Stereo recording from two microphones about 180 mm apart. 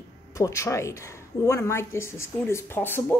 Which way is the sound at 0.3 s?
15° left (ahead or behind).